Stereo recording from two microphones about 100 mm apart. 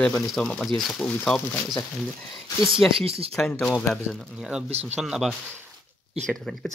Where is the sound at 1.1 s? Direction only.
15° left (ahead or behind).